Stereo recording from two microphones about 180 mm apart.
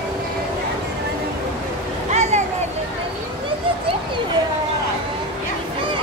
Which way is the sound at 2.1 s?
40° right (ahead or behind).